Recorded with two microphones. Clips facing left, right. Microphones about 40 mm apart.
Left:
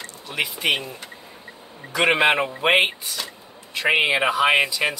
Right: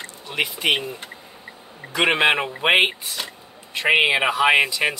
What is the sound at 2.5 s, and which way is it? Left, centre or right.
Speech, centre.